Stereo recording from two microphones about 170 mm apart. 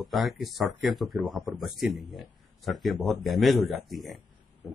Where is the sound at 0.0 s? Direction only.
Centre (ahead or behind).